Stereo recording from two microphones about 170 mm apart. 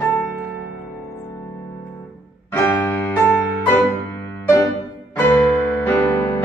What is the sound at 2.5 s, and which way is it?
Music, 15° left (ahead or behind).